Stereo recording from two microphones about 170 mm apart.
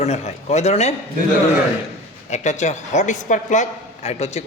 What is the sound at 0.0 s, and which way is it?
Speech, 40° left (ahead or behind).